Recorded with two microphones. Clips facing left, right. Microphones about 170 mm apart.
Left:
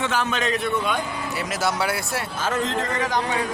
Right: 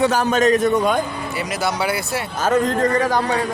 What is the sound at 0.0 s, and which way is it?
A man's voice, 40° right (ahead or behind).